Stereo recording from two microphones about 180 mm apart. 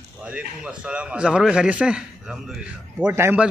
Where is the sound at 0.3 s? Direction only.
5° right (ahead or behind).